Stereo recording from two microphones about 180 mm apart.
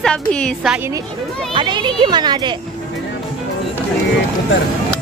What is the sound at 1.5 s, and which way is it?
Speech, 25° right (ahead or behind).